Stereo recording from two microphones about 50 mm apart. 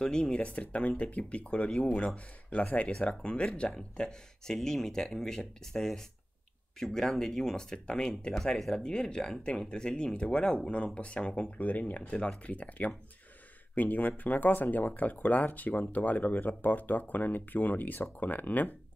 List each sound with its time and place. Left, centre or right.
0.0 s speech: centre
8.4 s speech: centre
8.7 s speech: centre; by 18.8 s left